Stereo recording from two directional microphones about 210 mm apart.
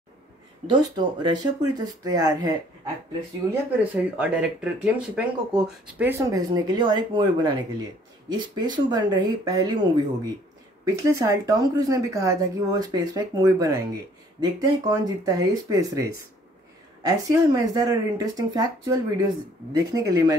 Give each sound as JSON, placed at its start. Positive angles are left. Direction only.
{"t": 0.7, "sound": "speech", "side_deg": -20}
{"t": 3.4, "sound": "speech", "side_deg": -5}